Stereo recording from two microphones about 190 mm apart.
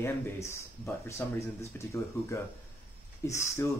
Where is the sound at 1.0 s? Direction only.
15° left (ahead or behind).